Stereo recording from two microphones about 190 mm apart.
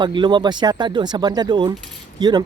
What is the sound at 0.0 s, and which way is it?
Speech, 25° right (ahead or behind).